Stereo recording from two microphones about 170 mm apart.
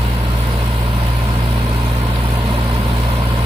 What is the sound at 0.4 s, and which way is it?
Vehicle, 40° right (ahead or behind).